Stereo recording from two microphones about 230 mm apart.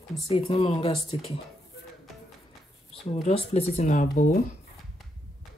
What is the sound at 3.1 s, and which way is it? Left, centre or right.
Speech, left.